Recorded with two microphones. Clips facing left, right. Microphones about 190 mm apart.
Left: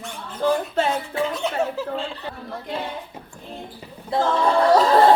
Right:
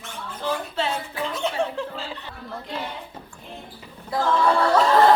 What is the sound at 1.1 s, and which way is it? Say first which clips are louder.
Speech: left 6 dB; 25° left (ahead or behind).